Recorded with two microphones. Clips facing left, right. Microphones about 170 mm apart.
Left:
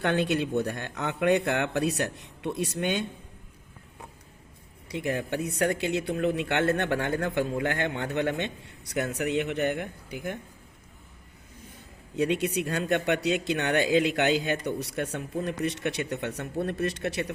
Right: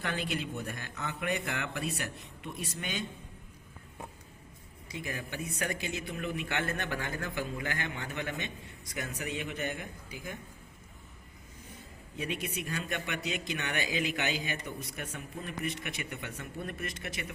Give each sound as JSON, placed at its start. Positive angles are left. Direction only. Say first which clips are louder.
{"t": 0.0, "sound": "speech", "louder": "left 9 dB", "side_deg": 70}
{"t": 4.9, "sound": "a man's voice", "louder": "left 10 dB", "side_deg": 65}
{"t": 12.1, "sound": "speech", "louder": "left 11 dB", "side_deg": 75}